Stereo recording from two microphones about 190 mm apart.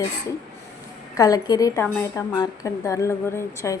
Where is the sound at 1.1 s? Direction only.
20° left (ahead or behind).